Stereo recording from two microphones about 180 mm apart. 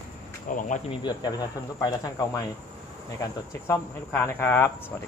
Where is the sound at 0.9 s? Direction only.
25° left (ahead or behind).